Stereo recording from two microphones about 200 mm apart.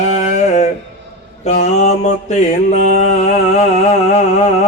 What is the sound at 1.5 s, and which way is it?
Mantra, 35° left (ahead or behind).